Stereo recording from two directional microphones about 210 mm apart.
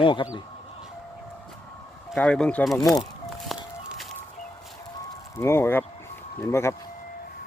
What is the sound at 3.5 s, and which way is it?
Music, centre (ahead or behind).